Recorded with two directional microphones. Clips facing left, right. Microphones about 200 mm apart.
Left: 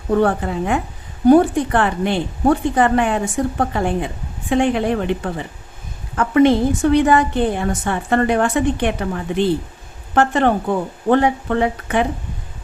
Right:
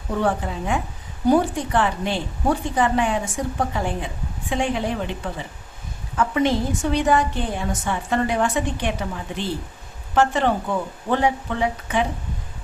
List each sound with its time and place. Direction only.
0.2 s a woman's voice: 60° left (ahead or behind)